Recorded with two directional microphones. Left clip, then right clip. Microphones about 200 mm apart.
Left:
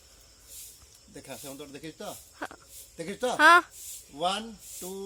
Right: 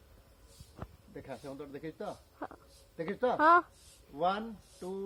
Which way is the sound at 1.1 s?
45° left (ahead or behind).